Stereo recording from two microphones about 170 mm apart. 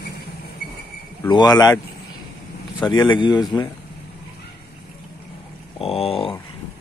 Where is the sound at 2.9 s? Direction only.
25° left (ahead or behind).